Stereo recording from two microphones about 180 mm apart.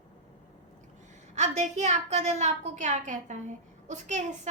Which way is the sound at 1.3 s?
40° right (ahead or behind).